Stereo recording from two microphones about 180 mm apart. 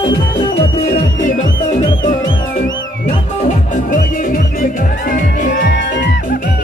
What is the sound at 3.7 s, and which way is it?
Music, 50° left (ahead or behind).